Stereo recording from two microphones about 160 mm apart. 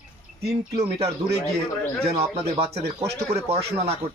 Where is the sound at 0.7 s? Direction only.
35° right (ahead or behind).